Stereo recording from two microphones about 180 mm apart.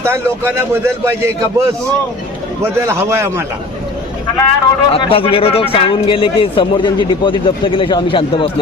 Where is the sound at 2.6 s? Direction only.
15° right (ahead or behind).